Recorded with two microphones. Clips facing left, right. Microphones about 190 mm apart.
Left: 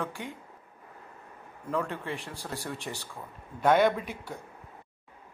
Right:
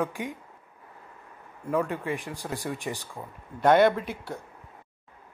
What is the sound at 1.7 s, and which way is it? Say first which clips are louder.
Speech: right 4 dB; 15° right (ahead or behind).